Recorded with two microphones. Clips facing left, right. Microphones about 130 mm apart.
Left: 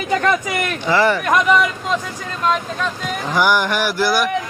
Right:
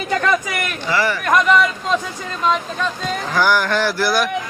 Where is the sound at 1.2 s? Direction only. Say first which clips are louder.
Even; 10° left (ahead or behind).